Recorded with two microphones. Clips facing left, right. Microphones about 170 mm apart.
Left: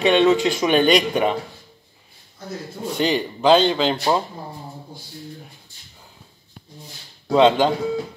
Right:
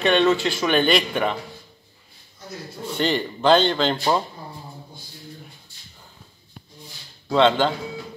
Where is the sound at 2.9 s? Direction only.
10° left (ahead or behind).